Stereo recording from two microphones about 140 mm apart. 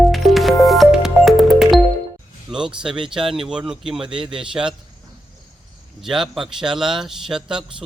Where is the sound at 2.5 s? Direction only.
5° right (ahead or behind).